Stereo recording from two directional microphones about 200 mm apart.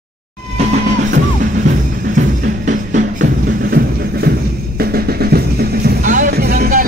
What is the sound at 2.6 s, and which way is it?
Music, 40° right (ahead or behind).